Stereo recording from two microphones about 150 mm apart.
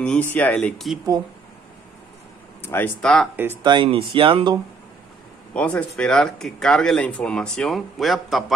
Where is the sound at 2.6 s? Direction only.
15° left (ahead or behind).